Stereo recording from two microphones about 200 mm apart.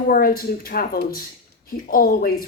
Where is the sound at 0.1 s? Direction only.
45° left (ahead or behind).